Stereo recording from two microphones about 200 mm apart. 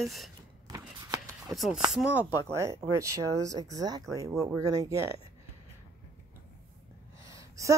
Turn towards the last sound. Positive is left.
turn(degrees=-15)  # may be behind; listen again after turning